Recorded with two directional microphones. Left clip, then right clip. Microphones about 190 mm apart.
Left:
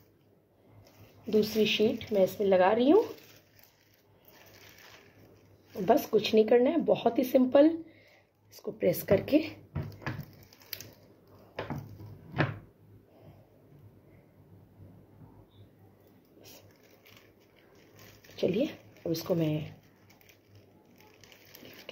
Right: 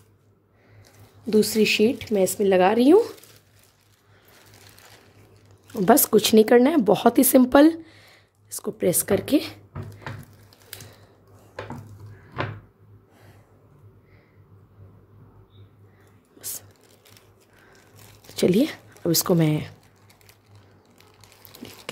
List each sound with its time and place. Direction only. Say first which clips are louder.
1.3 s speech: right 7 dB; 70° right (ahead or behind)
5.9 s speech: right 8 dB; 75° right (ahead or behind)
8.7 s a woman's voice: right 4 dB; 45° right (ahead or behind)
18.3 s a sound: right 9 dB; 75° right (ahead or behind)